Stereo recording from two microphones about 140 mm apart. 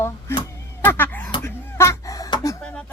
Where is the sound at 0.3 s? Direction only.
15° left (ahead or behind).